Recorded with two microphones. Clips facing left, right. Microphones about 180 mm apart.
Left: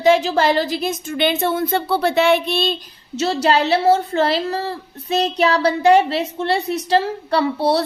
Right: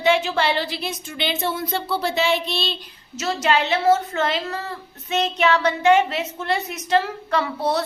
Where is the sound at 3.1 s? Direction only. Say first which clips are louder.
Left 4 dB; 30° left (ahead or behind).